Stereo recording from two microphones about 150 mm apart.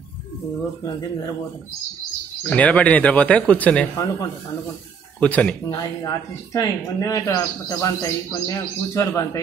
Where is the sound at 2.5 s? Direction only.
10° left (ahead or behind).